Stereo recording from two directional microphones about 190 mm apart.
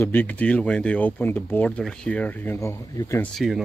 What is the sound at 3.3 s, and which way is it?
Speech, centre (ahead or behind).